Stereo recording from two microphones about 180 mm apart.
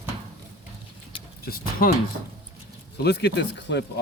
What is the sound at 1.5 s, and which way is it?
Speech, 55° left (ahead or behind).